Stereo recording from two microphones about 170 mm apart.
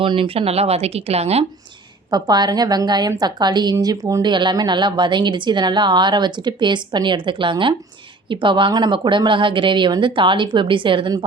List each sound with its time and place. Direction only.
0.0 s speech: 30° right (ahead or behind)
2.0 s a woman's voice: 25° right (ahead or behind)